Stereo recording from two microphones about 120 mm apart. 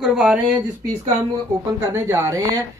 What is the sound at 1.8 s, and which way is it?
Speech, 20° right (ahead or behind).